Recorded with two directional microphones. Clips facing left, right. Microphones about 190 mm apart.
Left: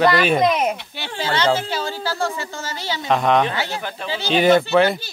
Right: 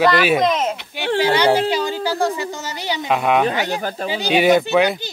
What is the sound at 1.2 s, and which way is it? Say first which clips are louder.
A woman's voice: right 4 dB; 15° right (ahead or behind).